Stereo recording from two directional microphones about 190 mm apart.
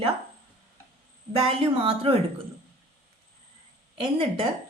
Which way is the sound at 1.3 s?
30° right (ahead or behind).